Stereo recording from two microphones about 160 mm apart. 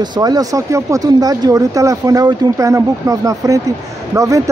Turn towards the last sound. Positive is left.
turn(degrees=-20)  # may be behind; listen again after turning